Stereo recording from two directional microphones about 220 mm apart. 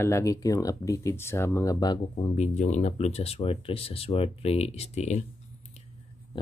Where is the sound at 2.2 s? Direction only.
30° left (ahead or behind).